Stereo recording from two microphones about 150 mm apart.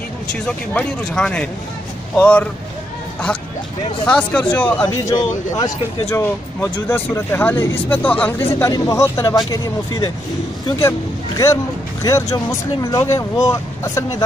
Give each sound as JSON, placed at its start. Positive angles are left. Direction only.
{"t": 0.3, "sound": "speech", "side_deg": 5}
{"t": 4.0, "sound": "speech", "side_deg": 5}
{"t": 4.8, "sound": "speech", "side_deg": 25}